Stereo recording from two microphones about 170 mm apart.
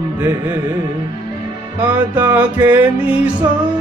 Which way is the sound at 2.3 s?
15° right (ahead or behind).